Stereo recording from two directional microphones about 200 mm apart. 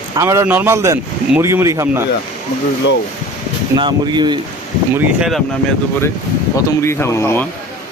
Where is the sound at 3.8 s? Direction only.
20° right (ahead or behind).